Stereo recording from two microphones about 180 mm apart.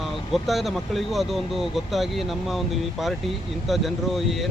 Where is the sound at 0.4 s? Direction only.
Centre (ahead or behind).